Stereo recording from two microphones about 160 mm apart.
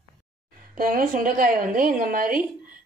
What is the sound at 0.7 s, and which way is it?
A woman's voice, 60° right (ahead or behind).